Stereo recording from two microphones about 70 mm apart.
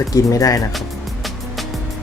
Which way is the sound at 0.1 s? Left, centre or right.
Left.